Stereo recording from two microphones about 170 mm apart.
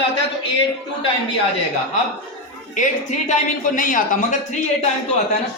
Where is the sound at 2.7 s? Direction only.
45° left (ahead or behind).